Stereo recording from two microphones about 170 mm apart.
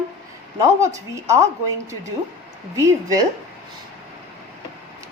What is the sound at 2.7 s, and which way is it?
Speech, 20° right (ahead or behind).